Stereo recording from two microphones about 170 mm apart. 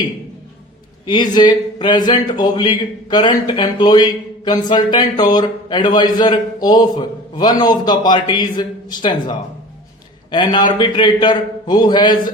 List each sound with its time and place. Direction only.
1.0 s speech: 25° left (ahead or behind)